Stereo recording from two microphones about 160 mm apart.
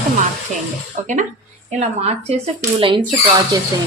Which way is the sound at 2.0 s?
40° right (ahead or behind).